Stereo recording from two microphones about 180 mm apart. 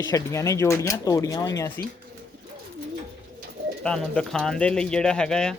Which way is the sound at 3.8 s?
5° left (ahead or behind).